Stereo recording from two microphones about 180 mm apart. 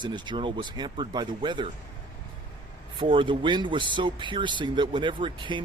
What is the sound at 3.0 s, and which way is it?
Speech, 30° right (ahead or behind).